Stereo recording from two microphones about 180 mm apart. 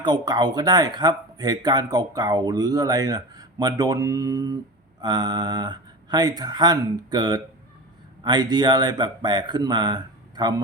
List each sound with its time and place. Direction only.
0.0 s speech: 25° right (ahead or behind)